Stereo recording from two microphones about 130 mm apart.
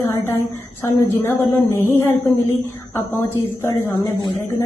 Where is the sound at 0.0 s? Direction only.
20° left (ahead or behind).